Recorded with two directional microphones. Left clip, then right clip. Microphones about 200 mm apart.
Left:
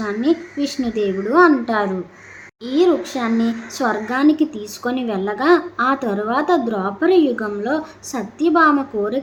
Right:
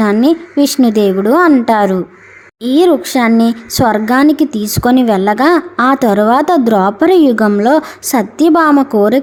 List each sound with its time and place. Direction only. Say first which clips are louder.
0.0 s speech: right 8 dB; 50° right (ahead or behind)